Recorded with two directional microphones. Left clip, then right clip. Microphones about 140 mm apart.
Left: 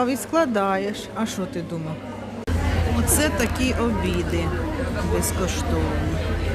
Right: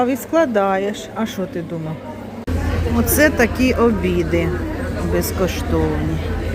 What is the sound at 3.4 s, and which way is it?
Speech, 35° right (ahead or behind).